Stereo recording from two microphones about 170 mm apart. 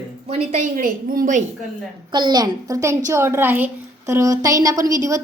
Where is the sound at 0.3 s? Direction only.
45° right (ahead or behind).